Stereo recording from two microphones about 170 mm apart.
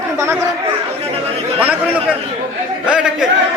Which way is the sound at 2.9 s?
5° right (ahead or behind).